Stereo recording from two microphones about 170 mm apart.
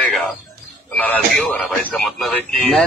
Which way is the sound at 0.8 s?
10° left (ahead or behind).